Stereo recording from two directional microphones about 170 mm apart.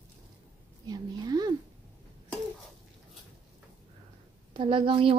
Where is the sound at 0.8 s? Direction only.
25° right (ahead or behind).